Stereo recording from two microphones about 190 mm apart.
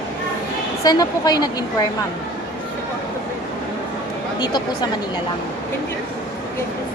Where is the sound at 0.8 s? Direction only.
20° left (ahead or behind).